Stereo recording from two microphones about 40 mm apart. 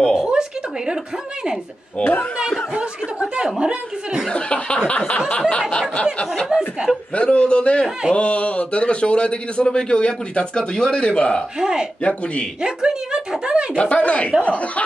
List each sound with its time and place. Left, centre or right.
0.3 s a sound: centre
2.0 s a man's voice: left
2.7 s speech: right
4.3 s a sound: left
5.7 s a man's voice: left
6.5 s chuckle: centre
7.2 s a man's voice: left
11.6 s speech: centre
12.0 s a man's voice: left
12.6 s speech: centre
13.7 s a sound: left